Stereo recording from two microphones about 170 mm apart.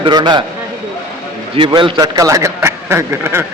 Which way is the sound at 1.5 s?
30° right (ahead or behind).